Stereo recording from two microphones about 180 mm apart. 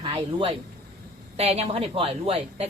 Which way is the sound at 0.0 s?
30° right (ahead or behind).